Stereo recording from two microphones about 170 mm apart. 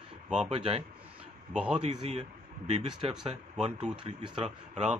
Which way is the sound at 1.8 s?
40° right (ahead or behind).